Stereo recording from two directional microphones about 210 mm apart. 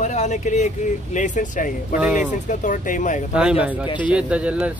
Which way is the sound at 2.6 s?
35° left (ahead or behind).